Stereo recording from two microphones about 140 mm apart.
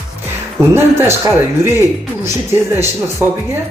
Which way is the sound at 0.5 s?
20° right (ahead or behind).